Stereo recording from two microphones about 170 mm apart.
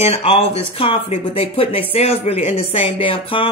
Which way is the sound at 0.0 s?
35° left (ahead or behind).